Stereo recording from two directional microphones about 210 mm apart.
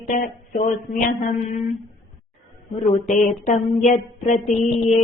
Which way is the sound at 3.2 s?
35° left (ahead or behind).